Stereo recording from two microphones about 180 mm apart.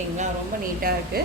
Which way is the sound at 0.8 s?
55° right (ahead or behind).